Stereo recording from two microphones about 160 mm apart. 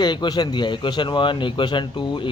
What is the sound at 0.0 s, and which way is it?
Speech, 25° left (ahead or behind).